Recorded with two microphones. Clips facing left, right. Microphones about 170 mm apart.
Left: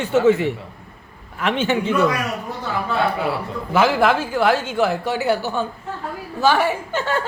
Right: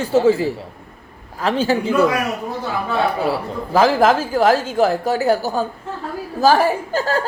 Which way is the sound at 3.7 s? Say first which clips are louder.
Right 3 dB; 35° right (ahead or behind).